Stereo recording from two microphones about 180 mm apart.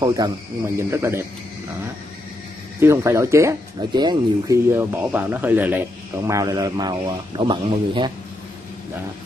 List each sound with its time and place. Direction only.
0.2 s a man's voice: 25° right (ahead or behind)
2.8 s a man's voice: 15° right (ahead or behind)
4.6 s a man's voice: 10° right (ahead or behind)